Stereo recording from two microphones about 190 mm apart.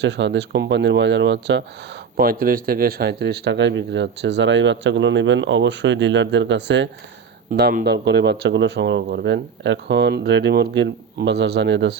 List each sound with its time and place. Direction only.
0.0 s speech: 65° right (ahead or behind)
2.1 s speech: 50° right (ahead or behind); by 6.8 s 70° right (ahead or behind)
7.5 s speech: 55° right (ahead or behind)
7.9 s speech: 65° right (ahead or behind)